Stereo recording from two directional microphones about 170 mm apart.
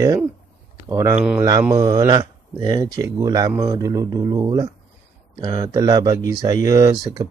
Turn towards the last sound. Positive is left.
turn(degrees=-25)  # may be behind; listen again after turning